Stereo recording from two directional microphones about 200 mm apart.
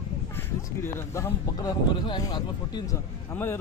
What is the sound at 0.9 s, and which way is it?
Speech, 15° left (ahead or behind).